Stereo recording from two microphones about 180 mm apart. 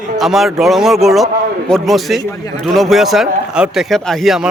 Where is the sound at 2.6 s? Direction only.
Centre (ahead or behind).